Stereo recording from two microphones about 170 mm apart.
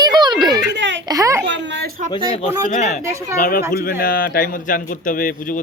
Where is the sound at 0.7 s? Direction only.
90° right.